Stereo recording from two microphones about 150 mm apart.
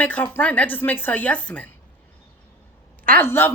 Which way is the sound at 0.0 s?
10° left (ahead or behind).